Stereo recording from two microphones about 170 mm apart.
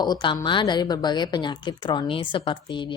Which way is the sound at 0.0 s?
25° left (ahead or behind).